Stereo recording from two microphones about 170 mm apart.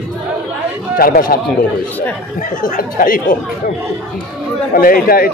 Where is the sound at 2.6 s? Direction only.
55° left (ahead or behind).